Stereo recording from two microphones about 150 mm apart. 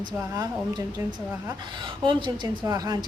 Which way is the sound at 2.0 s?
30° right (ahead or behind).